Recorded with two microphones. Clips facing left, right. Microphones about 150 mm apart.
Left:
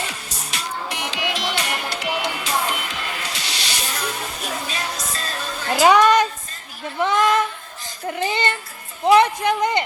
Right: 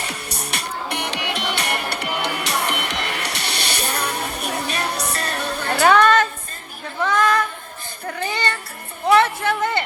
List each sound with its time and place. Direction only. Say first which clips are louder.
0.1 s music: right 3 dB; 65° right (ahead or behind)
5.8 s a sound: left 1 dB; 15° left (ahead or behind)
8.0 s child singing: left 2 dB; 20° left (ahead or behind)
9.1 s speech: left 1 dB; 15° left (ahead or behind)